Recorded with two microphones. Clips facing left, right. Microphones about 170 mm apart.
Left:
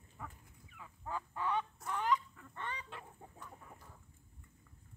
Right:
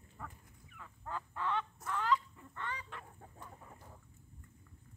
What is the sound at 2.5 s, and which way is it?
Chicken, 20° left (ahead or behind).